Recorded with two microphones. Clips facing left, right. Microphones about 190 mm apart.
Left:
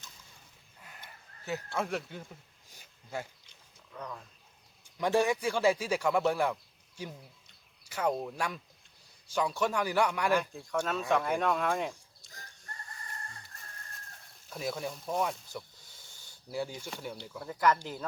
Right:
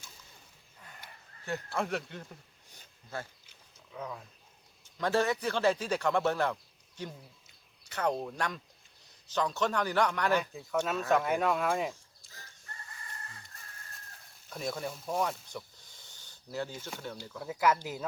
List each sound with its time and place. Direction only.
0.8 s a sound: 5° left (ahead or behind)
1.5 s speech: 5° left (ahead or behind)
2.7 s a sound: 10° left (ahead or behind)
3.9 s speech: 5° right (ahead or behind)
4.9 s a man's voice: 15° left (ahead or behind)
10.5 s speech: 5° right (ahead or behind)
12.6 s chicken: 45° left (ahead or behind)
14.5 s a man's voice: 5° left (ahead or behind)
17.4 s speech: 5° right (ahead or behind)